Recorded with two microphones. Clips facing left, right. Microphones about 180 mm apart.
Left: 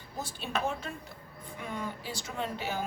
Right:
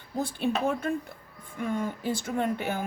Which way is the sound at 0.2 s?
55° right (ahead or behind).